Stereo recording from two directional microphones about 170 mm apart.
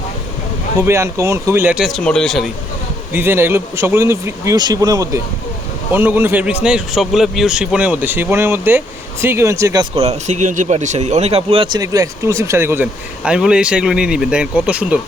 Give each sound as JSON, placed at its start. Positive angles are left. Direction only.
{"t": 0.8, "sound": "speech", "side_deg": -15}
{"t": 3.1, "sound": "speech", "side_deg": -10}
{"t": 5.9, "sound": "speech", "side_deg": -10}
{"t": 9.9, "sound": "speech", "side_deg": -40}